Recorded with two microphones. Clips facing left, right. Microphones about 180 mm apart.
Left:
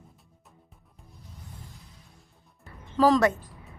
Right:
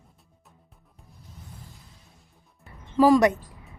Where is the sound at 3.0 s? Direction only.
10° right (ahead or behind).